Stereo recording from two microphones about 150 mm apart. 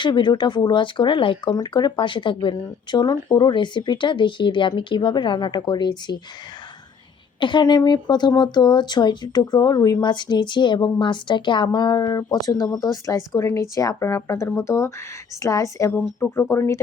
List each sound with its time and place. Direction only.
0.0 s speech: 30° left (ahead or behind)
7.3 s speech: 35° left (ahead or behind)